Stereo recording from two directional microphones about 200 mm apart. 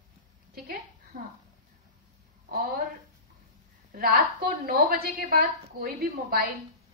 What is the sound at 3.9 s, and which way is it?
A woman's voice, 50° right (ahead or behind).